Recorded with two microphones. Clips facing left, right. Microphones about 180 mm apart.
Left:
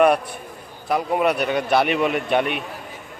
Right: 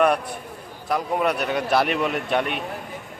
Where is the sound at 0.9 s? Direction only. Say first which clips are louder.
Left 3 dB; 5° left (ahead or behind).